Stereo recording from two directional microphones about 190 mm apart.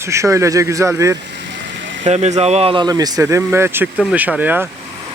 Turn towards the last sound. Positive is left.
turn(degrees=-10)  # may be behind; listen again after turning